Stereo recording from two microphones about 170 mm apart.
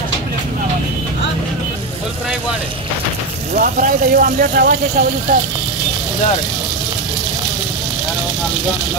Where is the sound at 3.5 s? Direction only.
55° right (ahead or behind).